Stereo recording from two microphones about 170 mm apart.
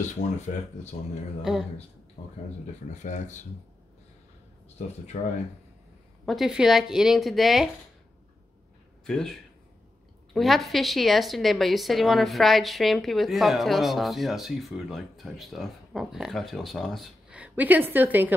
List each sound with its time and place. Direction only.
0.2 s speech: 45° left (ahead or behind)
1.4 s a woman's voice: 5° right (ahead or behind)
2.9 s speech: 45° left (ahead or behind)
4.7 s speech: 45° left (ahead or behind)
6.2 s a woman's voice: centre (ahead or behind)
9.0 s a woman's voice: centre (ahead or behind)